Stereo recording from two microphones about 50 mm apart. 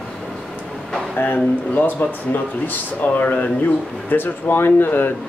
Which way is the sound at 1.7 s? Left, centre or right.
Left.